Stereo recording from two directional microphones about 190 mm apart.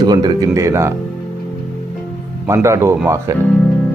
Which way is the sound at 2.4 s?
15° right (ahead or behind).